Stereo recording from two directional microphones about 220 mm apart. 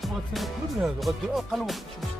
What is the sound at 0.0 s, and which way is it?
Music, centre (ahead or behind).